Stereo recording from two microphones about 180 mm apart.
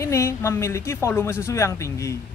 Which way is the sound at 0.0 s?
15° left (ahead or behind).